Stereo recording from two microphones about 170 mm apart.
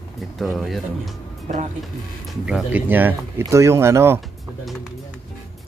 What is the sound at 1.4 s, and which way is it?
Speech, 45° right (ahead or behind).